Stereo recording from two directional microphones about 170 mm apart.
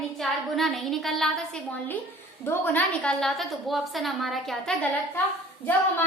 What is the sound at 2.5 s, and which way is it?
A woman's voice, 10° left (ahead or behind).